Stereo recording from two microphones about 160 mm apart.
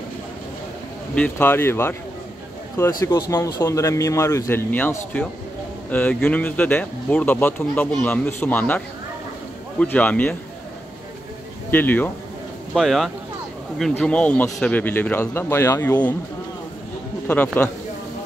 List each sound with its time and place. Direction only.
1.1 s speech: 10° left (ahead or behind)
3.0 s speech: 25° left (ahead or behind)
11.7 s speech: 10° left (ahead or behind)
12.7 s speech: centre (ahead or behind)